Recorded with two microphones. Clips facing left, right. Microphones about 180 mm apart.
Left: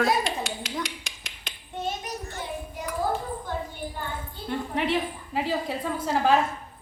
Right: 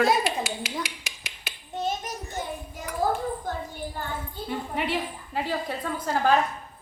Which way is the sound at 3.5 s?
45° right (ahead or behind).